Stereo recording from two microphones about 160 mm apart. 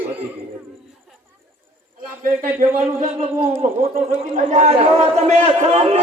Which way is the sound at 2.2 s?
55° right (ahead or behind).